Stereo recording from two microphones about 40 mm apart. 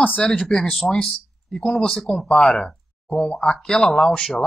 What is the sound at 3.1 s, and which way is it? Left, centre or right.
Speech, centre.